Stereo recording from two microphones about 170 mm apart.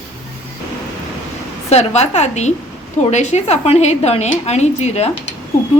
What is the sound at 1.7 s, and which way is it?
A woman's voice, 40° left (ahead or behind).